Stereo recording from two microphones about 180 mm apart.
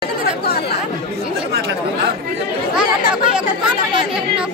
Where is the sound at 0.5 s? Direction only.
65° left (ahead or behind).